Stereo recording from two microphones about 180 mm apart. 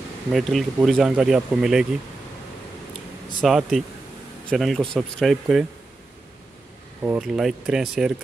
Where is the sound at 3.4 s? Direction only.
Centre (ahead or behind).